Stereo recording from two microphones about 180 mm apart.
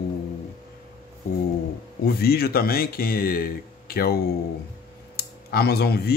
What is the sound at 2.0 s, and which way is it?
Speech, 60° left (ahead or behind).